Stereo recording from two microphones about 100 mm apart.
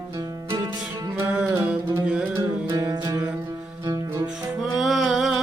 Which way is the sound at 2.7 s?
45° right (ahead or behind).